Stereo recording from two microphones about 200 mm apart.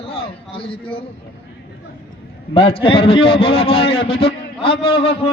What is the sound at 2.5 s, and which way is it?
A man's voice, 25° left (ahead or behind).